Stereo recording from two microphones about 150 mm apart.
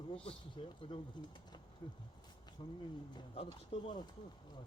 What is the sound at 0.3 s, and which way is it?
Speech, 35° left (ahead or behind).